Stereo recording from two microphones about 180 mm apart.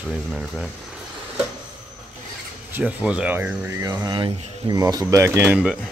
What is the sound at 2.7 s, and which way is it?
Speech, 5° right (ahead or behind).